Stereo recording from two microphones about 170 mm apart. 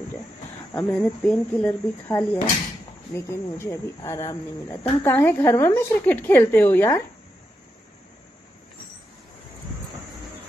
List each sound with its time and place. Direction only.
0.7 s a woman's voice: 10° left (ahead or behind)